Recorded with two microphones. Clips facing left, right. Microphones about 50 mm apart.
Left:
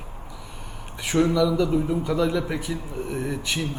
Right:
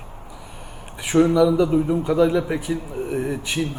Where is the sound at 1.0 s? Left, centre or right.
Centre.